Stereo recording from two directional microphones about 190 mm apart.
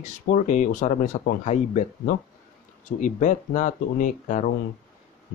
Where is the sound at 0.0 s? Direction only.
40° left (ahead or behind).